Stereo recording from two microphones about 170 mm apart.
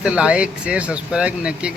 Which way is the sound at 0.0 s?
5° right (ahead or behind).